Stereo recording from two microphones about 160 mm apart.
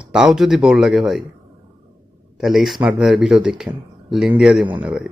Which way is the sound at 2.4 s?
Centre (ahead or behind).